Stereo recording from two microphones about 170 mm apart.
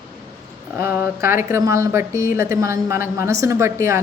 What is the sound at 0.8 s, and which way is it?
Speech, 15° right (ahead or behind).